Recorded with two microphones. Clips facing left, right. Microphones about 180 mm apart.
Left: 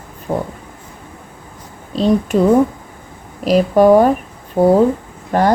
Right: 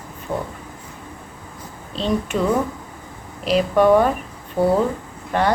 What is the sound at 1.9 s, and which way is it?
Speech, 40° left (ahead or behind).